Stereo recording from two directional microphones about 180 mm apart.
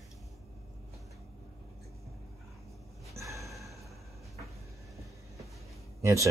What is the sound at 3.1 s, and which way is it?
Gasp, 15° right (ahead or behind).